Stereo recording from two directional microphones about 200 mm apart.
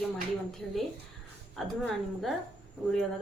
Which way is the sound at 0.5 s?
Centre (ahead or behind).